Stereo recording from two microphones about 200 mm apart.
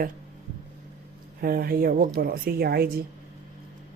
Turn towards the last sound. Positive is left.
turn(degrees=-50)  # may be behind; listen again after turning